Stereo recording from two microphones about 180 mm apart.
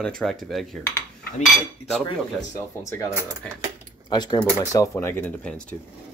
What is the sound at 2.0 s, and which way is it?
Speech, 15° left (ahead or behind).